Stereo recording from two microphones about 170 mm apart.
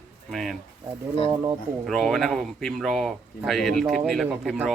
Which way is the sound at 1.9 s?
Centre (ahead or behind).